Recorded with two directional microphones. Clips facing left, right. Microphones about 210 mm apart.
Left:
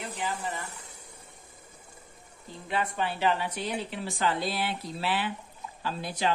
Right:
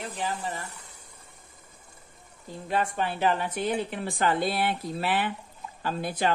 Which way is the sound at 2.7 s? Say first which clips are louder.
Right 2 dB; 45° right (ahead or behind).